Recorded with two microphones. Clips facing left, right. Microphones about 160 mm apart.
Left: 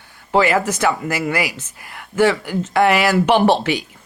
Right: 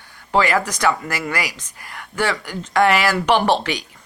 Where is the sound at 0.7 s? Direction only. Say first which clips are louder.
Left 2 dB; 10° left (ahead or behind).